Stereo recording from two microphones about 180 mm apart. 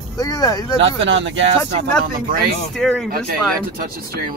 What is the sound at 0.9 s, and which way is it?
Speech, 90° right.